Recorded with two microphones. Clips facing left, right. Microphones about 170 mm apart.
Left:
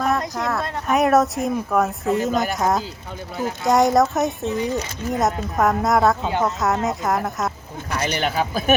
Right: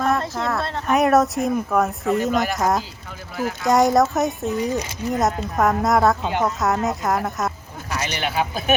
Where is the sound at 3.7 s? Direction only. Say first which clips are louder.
Even; centre (ahead or behind).